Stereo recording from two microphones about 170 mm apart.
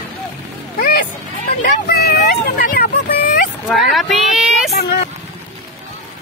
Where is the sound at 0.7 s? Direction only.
60° left (ahead or behind).